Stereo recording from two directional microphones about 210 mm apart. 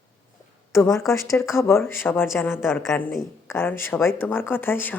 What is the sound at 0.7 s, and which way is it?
Speech, 15° left (ahead or behind).